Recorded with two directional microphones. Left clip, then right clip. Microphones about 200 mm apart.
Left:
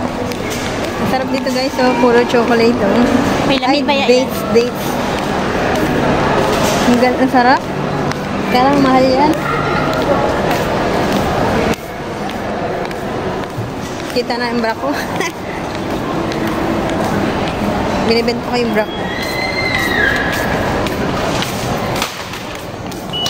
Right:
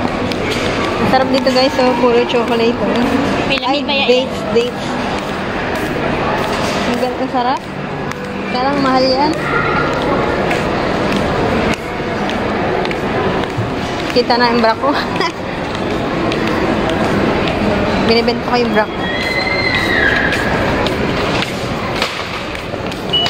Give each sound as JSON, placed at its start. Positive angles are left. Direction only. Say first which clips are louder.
{"t": 1.8, "sound": "speech", "louder": "even", "side_deg": 15}
{"t": 3.7, "sound": "a woman's voice", "louder": "left 2 dB", "side_deg": 60}
{"t": 4.0, "sound": "a woman's voice", "louder": "left 1 dB", "side_deg": 20}
{"t": 7.3, "sound": "a woman's voice", "louder": "left 5 dB", "side_deg": 20}
{"t": 8.9, "sound": "speech", "louder": "left 2 dB", "side_deg": 5}
{"t": 14.1, "sound": "speech", "louder": "right 5 dB", "side_deg": 10}
{"t": 18.0, "sound": "speech", "louder": "right 1 dB", "side_deg": 10}